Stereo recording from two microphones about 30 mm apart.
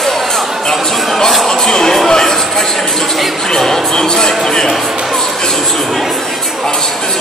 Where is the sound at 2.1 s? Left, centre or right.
Centre.